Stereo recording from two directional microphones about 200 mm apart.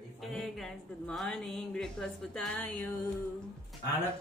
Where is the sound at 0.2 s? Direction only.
Centre (ahead or behind).